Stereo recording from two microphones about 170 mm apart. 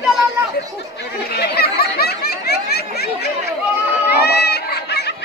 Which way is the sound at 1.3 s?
65° left (ahead or behind).